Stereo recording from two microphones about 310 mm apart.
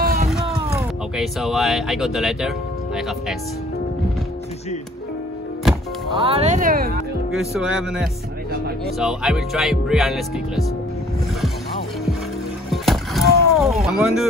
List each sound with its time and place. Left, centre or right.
0.0 s a sound: right
0.3 s speech: centre
6.2 s speech: centre
7.2 s music: centre
12.7 s rowboat: centre
13.8 s music: centre